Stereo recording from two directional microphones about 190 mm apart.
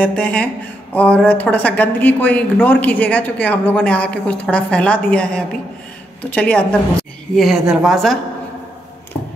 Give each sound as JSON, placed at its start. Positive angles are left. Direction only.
{"t": 0.0, "sound": "a woman's voice", "side_deg": 5}